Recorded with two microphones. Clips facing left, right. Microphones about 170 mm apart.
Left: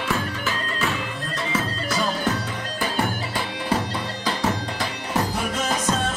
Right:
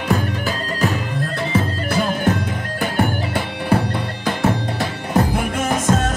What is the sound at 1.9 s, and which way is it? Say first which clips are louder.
Music: right 3 dB; 60° right (ahead or behind).